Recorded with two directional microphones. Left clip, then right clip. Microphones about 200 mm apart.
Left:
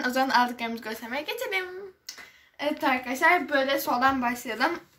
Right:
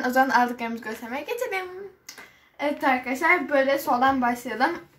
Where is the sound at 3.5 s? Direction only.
5° right (ahead or behind).